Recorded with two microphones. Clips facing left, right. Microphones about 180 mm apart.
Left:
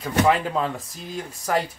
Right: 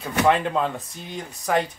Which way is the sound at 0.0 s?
Centre (ahead or behind).